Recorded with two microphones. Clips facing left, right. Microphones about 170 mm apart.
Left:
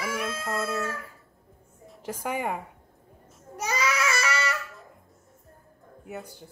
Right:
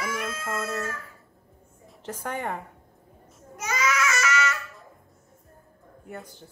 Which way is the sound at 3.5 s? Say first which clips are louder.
Right 1 dB; 30° left (ahead or behind).